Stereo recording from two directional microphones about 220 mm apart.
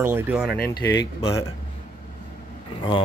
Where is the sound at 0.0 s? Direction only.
5° right (ahead or behind).